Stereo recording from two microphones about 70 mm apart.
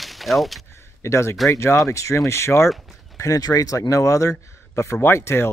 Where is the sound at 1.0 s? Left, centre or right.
Left.